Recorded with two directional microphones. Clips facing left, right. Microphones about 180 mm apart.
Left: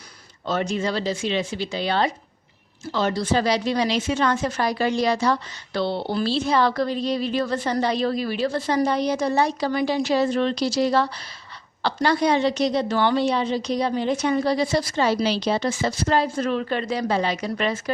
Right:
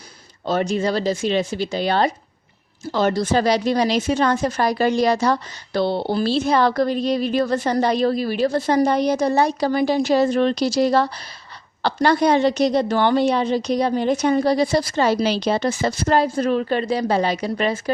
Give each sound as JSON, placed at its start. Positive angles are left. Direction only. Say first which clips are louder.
{"t": 0.4, "sound": "a woman's voice", "louder": "right 4 dB", "side_deg": -35}